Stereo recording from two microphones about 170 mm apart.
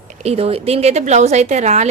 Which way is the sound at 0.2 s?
35° right (ahead or behind).